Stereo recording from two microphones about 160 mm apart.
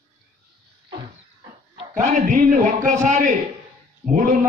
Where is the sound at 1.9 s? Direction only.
55° right (ahead or behind).